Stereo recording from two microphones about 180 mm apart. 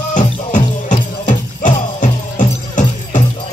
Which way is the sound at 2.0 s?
45° left (ahead or behind).